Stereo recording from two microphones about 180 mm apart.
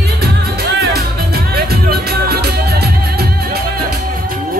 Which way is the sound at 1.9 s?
60° right (ahead or behind).